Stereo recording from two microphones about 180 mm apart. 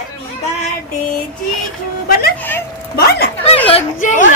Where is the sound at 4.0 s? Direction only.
45° left (ahead or behind).